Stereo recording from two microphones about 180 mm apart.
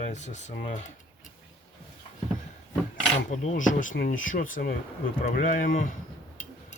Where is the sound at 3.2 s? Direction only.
45° left (ahead or behind).